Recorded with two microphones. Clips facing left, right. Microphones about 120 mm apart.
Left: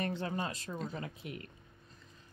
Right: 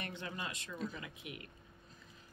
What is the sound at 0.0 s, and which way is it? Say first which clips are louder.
Speech: left 8 dB; 35° left (ahead or behind).